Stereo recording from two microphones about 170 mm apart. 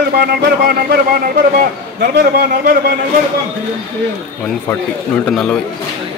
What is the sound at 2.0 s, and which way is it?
Speech, 65° right (ahead or behind).